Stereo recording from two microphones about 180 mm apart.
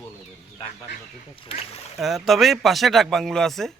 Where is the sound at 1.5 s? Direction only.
30° left (ahead or behind).